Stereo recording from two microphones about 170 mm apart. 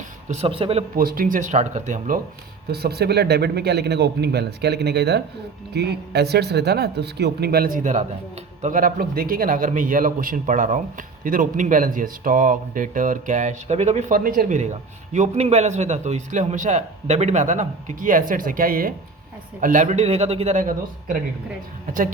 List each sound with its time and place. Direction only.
0.3 s speech: 35° right (ahead or behind)
0.9 s a man's voice: 60° right (ahead or behind)
2.6 s a man's voice: 70° right (ahead or behind); by 21.2 s 50° right (ahead or behind)